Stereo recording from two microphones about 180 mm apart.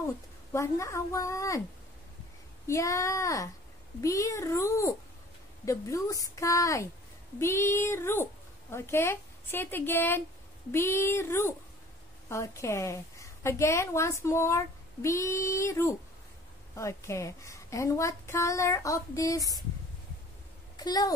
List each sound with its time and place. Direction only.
0.0 s speech: 15° left (ahead or behind)
2.6 s a woman's voice: 15° left (ahead or behind)
20.7 s a child's voice: 20° left (ahead or behind)